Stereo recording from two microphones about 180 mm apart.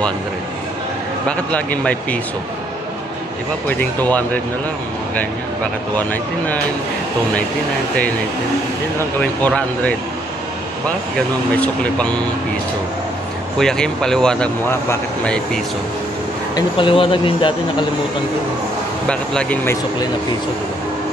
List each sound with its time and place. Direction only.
1.2 s speech: 5° left (ahead or behind)
3.6 s speech: 10° left (ahead or behind)
5.9 s speech: 10° left (ahead or behind)
9.2 s speech: 10° left (ahead or behind)
11.1 s speech: 5° left (ahead or behind)
13.6 s speech: 5° left (ahead or behind)
16.5 s speech: 30° left (ahead or behind)
19.0 s speech: 5° left (ahead or behind)